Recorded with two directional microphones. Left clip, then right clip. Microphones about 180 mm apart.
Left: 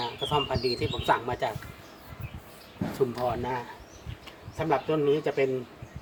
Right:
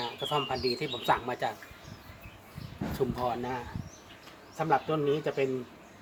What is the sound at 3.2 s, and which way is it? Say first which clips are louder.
Speech: left 3 dB; 15° right (ahead or behind).